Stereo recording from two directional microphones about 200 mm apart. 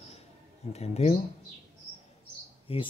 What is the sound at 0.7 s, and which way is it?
Speech, 30° left (ahead or behind).